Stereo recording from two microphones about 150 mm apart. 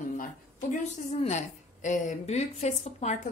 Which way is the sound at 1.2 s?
50° left (ahead or behind).